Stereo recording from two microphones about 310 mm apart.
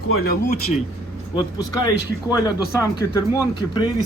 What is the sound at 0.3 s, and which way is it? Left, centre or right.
Speech, left.